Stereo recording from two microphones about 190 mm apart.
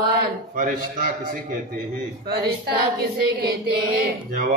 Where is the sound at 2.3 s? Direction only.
55° right (ahead or behind).